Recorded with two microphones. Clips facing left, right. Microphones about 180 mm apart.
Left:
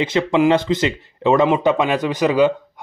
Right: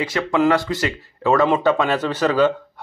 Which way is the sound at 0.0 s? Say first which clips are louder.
Left 2 dB; 20° left (ahead or behind).